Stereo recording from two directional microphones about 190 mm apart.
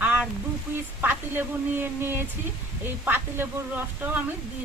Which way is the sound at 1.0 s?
10° right (ahead or behind).